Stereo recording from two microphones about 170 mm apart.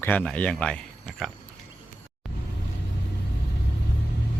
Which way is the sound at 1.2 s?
Centre (ahead or behind).